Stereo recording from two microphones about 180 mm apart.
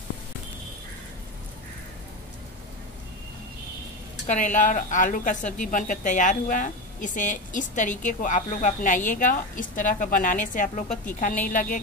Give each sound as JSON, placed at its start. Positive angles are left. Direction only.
{"t": 4.3, "sound": "speech", "side_deg": 45}